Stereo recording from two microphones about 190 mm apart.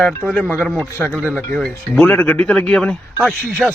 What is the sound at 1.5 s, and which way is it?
Speech, 5° left (ahead or behind).